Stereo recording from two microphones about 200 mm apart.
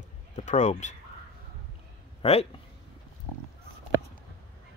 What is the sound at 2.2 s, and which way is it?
Speech, 30° left (ahead or behind).